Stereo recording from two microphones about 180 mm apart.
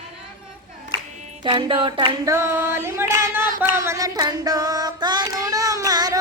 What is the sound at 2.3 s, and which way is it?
Singing, 15° right (ahead or behind).